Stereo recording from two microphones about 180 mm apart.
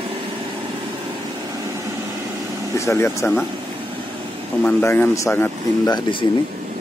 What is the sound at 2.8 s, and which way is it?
Speech, 15° left (ahead or behind).